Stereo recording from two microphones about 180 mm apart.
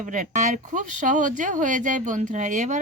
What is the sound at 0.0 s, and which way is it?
Speech, 45° right (ahead or behind).